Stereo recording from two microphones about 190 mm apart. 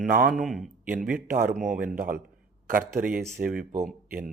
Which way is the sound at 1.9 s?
45° right (ahead or behind).